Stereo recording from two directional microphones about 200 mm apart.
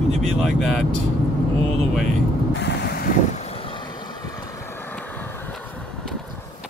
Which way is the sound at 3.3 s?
30° left (ahead or behind).